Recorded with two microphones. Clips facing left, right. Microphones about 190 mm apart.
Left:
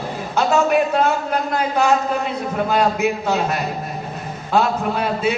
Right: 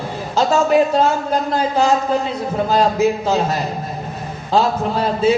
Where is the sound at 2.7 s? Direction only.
30° right (ahead or behind).